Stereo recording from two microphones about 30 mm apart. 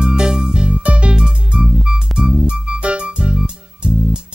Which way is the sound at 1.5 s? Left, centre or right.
Right.